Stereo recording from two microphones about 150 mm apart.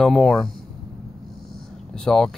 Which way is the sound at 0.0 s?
Centre (ahead or behind).